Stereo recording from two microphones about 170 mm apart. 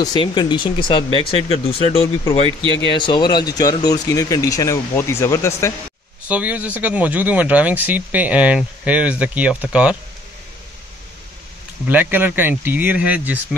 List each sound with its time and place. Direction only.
0.0 s speech: 25° left (ahead or behind)
6.2 s speech: 10° right (ahead or behind)
11.9 s speech: 10° right (ahead or behind)